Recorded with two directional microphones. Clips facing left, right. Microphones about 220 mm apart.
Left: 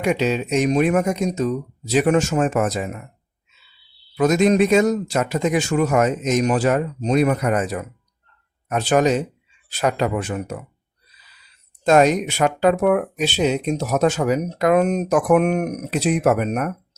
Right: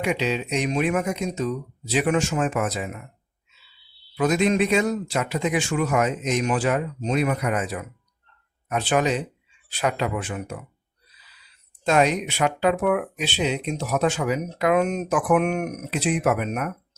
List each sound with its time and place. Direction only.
0.0 s speech: 45° left (ahead or behind)
4.2 s speech: 45° left (ahead or behind)
11.8 s speech: 45° left (ahead or behind)